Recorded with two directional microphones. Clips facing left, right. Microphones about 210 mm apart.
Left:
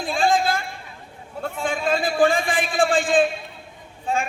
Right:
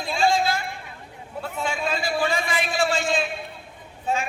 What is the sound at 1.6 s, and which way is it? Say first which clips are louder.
A man's voice: left 4 dB; 50° left (ahead or behind).